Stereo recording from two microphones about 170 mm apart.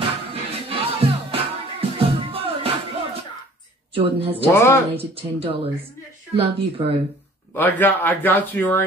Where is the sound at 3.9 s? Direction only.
35° right (ahead or behind).